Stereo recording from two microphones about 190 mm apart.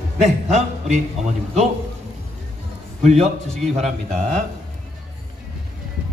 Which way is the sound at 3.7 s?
35° right (ahead or behind).